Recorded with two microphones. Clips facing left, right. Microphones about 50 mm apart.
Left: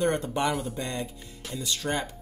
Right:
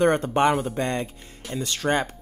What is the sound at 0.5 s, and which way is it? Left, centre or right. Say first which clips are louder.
Speech: right 6 dB; right.